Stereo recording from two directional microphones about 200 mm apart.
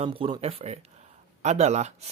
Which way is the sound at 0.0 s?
25° right (ahead or behind).